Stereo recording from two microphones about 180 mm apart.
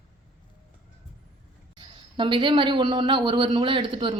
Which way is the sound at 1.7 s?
25° right (ahead or behind).